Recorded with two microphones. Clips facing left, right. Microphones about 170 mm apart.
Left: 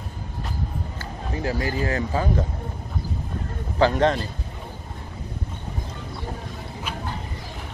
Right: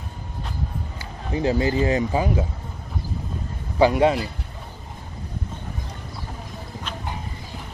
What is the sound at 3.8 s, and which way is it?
Speech, 10° right (ahead or behind).